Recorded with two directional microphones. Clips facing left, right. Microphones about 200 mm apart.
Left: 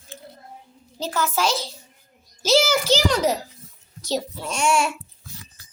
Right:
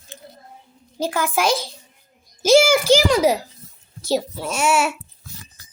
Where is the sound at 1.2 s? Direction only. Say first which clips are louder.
Right 2 dB; 10° right (ahead or behind).